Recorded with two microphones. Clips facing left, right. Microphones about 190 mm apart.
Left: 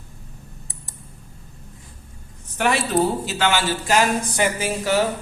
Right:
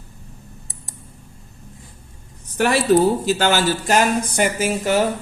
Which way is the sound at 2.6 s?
40° right (ahead or behind).